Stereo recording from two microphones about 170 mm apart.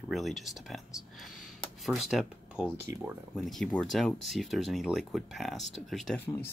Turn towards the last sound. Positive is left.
turn(degrees=10)  # may be behind; listen again after turning